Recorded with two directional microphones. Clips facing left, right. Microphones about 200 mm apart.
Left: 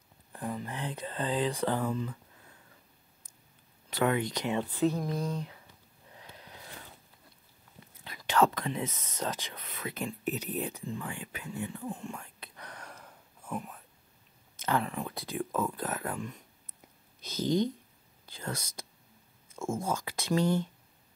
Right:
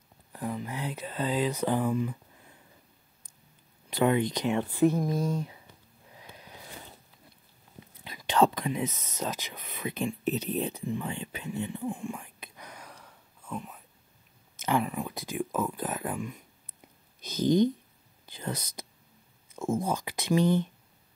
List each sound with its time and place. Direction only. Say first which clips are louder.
0.3 s speech: right 2 dB; 5° right (ahead or behind)
3.9 s speech: right 4 dB; 20° right (ahead or behind)
6.1 s a sound: right 1 dB; 15° right (ahead or behind)
8.0 s speech: right 2 dB; 20° right (ahead or behind)
12.0 s whispering: right 4 dB; 10° right (ahead or behind)
12.9 s a sound: left 1 dB; 5° left (ahead or behind)
14.6 s speech: right 3 dB; 10° right (ahead or behind)
18.2 s whispering: right 3 dB; 15° right (ahead or behind)
19.8 s speech: right 2 dB; 15° right (ahead or behind)